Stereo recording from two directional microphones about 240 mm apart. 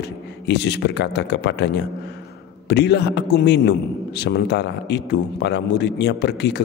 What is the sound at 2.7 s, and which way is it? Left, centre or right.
A man's voice, left.